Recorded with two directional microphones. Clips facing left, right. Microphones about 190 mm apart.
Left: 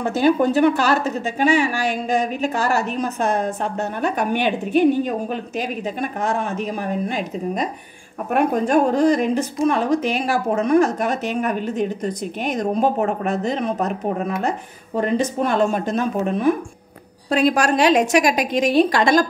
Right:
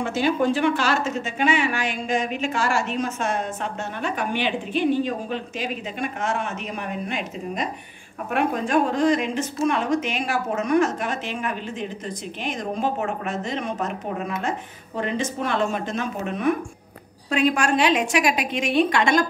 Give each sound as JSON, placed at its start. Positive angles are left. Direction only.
{"t": 0.0, "sound": "a woman's voice", "side_deg": 40}
{"t": 15.0, "sound": "a woman's voice", "side_deg": 40}